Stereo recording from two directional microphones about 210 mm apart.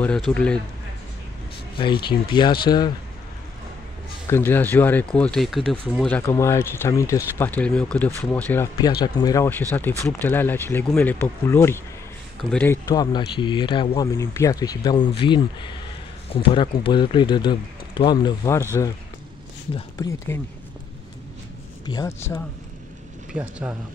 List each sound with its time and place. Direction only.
0.3 s speech: 5° left (ahead or behind)
1.8 s speech: 20° left (ahead or behind)
4.3 s speech: 10° left (ahead or behind)
9.0 s speech: 15° left (ahead or behind)
20.0 s speech: 15° left (ahead or behind)
21.8 s speech: 15° left (ahead or behind)
23.3 s speech: 5° right (ahead or behind)